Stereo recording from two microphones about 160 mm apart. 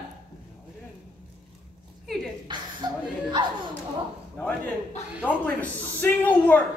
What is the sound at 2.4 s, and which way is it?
Chuckle, 30° right (ahead or behind).